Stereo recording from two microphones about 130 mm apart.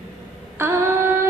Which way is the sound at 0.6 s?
20° right (ahead or behind).